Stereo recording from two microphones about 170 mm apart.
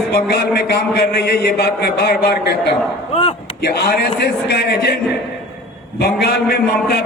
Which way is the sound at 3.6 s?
65° left (ahead or behind).